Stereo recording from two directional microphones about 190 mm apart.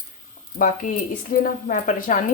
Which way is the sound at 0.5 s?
45° left (ahead or behind).